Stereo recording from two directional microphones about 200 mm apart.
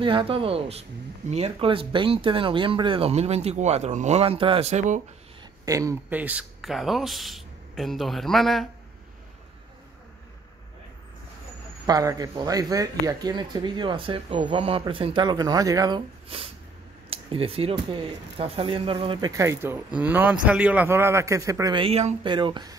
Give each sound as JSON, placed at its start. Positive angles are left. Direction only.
{"t": 0.0, "sound": "speech", "side_deg": -25}
{"t": 5.7, "sound": "speech", "side_deg": -15}
{"t": 11.8, "sound": "speech", "side_deg": -15}
{"t": 16.3, "sound": "a man's voice", "side_deg": -30}